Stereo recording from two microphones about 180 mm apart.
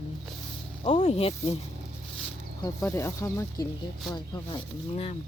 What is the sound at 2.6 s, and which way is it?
Speech, 15° left (ahead or behind).